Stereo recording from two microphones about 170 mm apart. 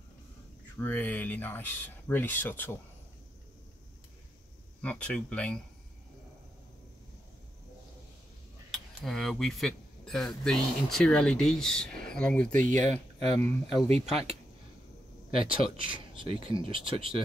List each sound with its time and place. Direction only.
0.7 s speech: 10° left (ahead or behind)
4.8 s speech: 10° left (ahead or behind)
8.7 s speech: centre (ahead or behind)
13.8 s speech: 35° right (ahead or behind)
15.8 s speech: 30° right (ahead or behind)